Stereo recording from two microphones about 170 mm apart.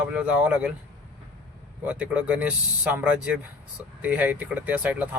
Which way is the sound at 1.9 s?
10° right (ahead or behind).